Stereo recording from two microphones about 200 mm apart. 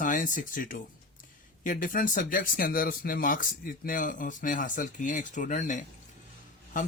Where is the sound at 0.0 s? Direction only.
40° left (ahead or behind).